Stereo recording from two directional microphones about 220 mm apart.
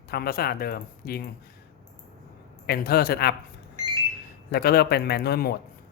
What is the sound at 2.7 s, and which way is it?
Speech, 45° left (ahead or behind).